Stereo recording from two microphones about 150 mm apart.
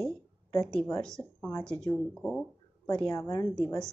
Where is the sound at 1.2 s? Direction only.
15° left (ahead or behind); by 2.5 s centre (ahead or behind).